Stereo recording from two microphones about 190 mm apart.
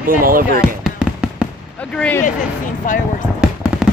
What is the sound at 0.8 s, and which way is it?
Fireworks, 5° right (ahead or behind).